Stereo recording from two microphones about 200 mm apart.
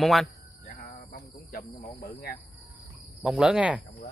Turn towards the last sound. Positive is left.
turn(degrees=-5)  # may be behind; listen again after turning